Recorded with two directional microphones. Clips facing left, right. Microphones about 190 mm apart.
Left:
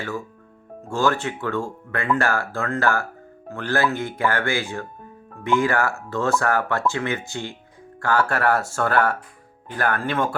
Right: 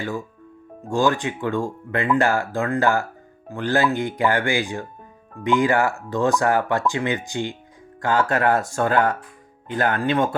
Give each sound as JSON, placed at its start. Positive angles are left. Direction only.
{"t": 0.0, "sound": "speech", "side_deg": -15}